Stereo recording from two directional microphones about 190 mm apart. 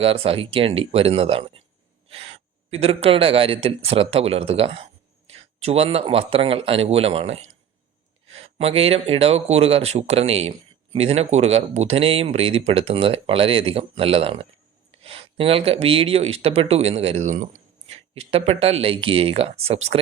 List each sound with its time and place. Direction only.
0.0 s speech: 30° right (ahead or behind)
8.4 s speech: 30° right (ahead or behind)